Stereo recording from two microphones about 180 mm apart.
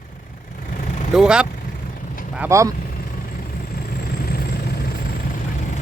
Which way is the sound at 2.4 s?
15° right (ahead or behind).